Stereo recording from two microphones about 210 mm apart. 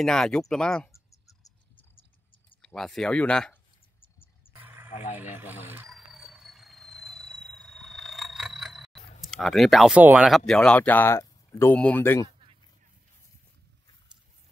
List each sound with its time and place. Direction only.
0.0 s speech: 5° left (ahead or behind)
2.6 s speech: centre (ahead or behind)
4.5 s a sound: 10° right (ahead or behind)
5.1 s cricket: 10° right (ahead or behind)
9.3 s speech: centre (ahead or behind)